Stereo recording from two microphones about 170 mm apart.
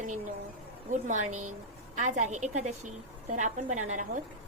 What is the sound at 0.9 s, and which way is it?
A woman's voice, 45° right (ahead or behind).